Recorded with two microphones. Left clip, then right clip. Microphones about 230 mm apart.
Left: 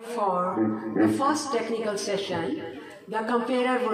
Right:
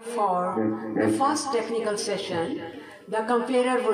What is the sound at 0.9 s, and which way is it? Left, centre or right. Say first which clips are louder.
A man's voice: even; right.